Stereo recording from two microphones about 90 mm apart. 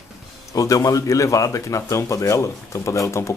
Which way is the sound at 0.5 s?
35° left (ahead or behind).